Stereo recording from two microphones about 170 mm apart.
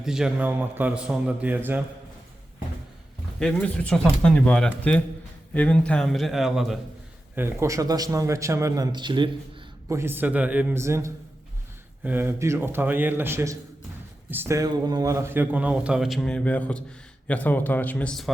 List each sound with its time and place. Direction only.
0.0 s speech: 5° right (ahead or behind)
3.4 s a man's voice: 5° left (ahead or behind)
7.3 s a man's voice: 15° right (ahead or behind)
9.9 s speech: 15° right (ahead or behind); by 18.3 s 5° left (ahead or behind)